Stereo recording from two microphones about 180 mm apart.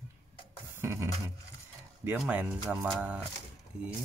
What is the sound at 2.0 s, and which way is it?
Speech, 10° right (ahead or behind).